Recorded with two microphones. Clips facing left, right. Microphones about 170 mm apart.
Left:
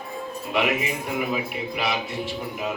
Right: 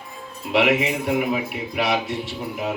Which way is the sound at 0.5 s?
80° right.